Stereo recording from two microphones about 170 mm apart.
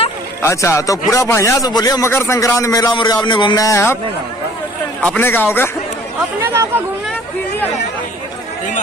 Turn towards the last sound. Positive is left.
turn(degrees=10)  # may be behind; listen again after turning